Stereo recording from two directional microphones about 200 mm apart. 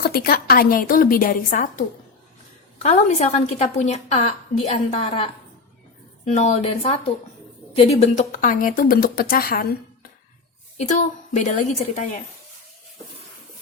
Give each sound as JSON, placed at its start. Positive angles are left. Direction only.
{"t": 0.0, "sound": "speech", "side_deg": 50}
{"t": 2.8, "sound": "a woman's voice", "side_deg": 35}
{"t": 10.8, "sound": "a woman's voice", "side_deg": 40}